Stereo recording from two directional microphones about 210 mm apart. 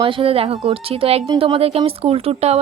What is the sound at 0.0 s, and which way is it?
Speech, 25° right (ahead or behind).